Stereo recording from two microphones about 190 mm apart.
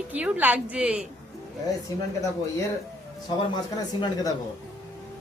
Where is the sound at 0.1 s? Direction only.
10° right (ahead or behind).